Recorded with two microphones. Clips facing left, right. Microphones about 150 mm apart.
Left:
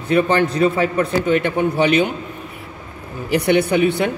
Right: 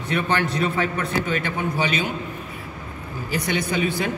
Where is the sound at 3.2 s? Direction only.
65° left (ahead or behind).